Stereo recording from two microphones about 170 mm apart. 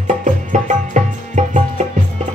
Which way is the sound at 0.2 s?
45° right (ahead or behind).